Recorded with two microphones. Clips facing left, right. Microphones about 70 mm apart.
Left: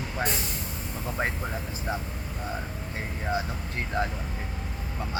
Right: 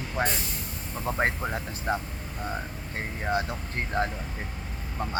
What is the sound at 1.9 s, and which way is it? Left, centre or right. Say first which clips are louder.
Speech: right 4 dB; right.